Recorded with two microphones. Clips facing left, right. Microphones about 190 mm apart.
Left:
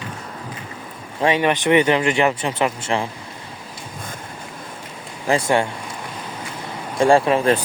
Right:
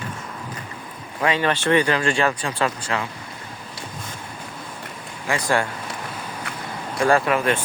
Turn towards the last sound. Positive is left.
turn(degrees=30)  # may be behind; listen again after turning